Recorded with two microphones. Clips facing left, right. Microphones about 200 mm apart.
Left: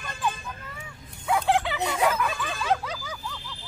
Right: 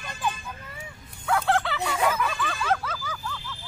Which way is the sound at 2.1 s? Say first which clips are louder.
Even; 10° left (ahead or behind).